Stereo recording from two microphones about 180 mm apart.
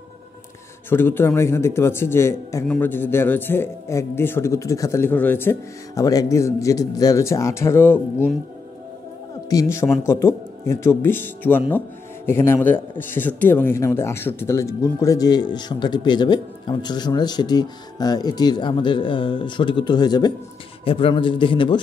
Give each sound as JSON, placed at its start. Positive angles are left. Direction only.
{"t": 0.8, "sound": "speech", "side_deg": 10}
{"t": 9.5, "sound": "speech", "side_deg": 15}